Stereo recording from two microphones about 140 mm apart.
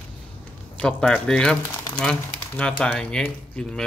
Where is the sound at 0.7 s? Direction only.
5° left (ahead or behind).